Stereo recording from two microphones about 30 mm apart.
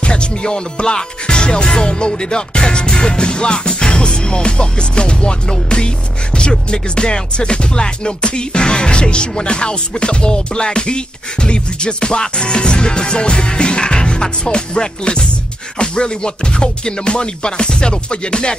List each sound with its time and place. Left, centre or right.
0.0 s music: left